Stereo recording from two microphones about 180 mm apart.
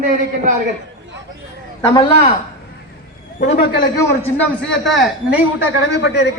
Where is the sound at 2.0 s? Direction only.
35° left (ahead or behind).